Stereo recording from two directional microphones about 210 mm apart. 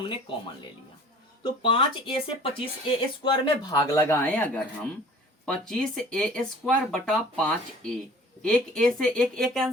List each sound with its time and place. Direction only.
0.0 s speech: 25° left (ahead or behind)
1.6 s speech: 25° left (ahead or behind); by 9.7 s centre (ahead or behind)